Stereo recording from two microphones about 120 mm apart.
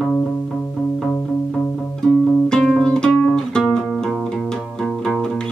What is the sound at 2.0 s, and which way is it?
Music, 5° left (ahead or behind).